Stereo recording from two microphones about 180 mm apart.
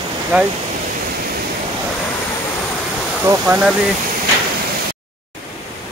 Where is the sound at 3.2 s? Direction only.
10° right (ahead or behind).